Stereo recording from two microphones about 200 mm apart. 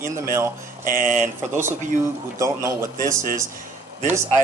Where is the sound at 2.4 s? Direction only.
15° right (ahead or behind).